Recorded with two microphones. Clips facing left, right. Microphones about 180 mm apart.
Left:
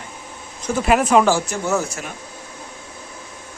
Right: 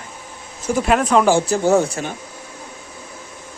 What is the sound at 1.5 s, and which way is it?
Speech, 30° right (ahead or behind).